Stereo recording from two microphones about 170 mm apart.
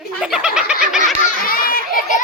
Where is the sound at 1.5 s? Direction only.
55° left (ahead or behind).